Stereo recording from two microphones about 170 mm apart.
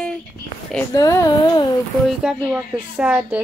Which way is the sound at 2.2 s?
5° right (ahead or behind).